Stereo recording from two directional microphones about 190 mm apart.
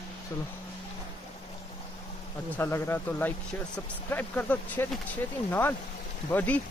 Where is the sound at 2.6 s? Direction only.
10° left (ahead or behind).